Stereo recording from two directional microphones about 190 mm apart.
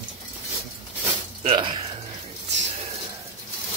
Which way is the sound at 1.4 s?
25° right (ahead or behind).